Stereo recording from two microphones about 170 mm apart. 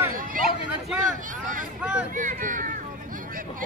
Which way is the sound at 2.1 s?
50° right (ahead or behind).